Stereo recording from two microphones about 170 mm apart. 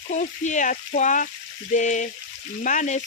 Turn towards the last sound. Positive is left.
turn(degrees=45)  # may be behind; listen again after turning